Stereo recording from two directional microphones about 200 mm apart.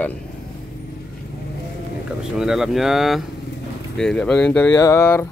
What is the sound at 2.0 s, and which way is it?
Speech, 5° right (ahead or behind).